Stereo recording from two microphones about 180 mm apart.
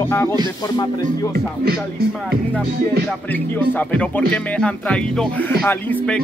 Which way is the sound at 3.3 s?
10° left (ahead or behind).